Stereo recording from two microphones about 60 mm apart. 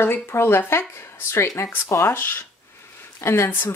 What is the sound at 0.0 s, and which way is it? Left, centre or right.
Speech, left.